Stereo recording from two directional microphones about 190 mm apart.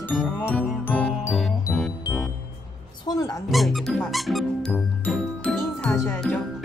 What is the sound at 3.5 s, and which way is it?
Music, centre (ahead or behind).